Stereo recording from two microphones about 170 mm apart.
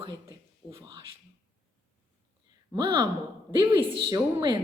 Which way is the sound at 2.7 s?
25° right (ahead or behind).